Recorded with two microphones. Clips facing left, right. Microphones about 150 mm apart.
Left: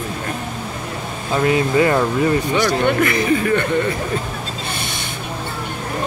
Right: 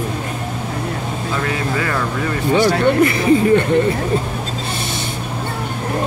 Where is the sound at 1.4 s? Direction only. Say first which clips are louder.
Left 9 dB; 20° left (ahead or behind).